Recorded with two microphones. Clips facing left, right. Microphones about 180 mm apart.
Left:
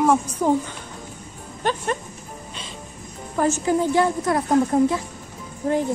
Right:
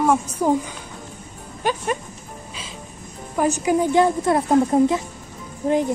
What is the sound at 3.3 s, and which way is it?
A woman's voice, 15° right (ahead or behind).